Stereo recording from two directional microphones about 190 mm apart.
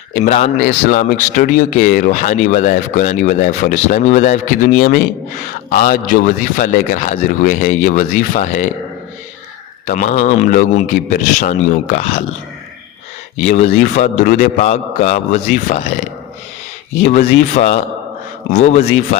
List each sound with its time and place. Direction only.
0.1 s speech: 40° left (ahead or behind)
9.8 s a man's voice: 40° left (ahead or behind)
13.4 s a man's voice: 40° left (ahead or behind)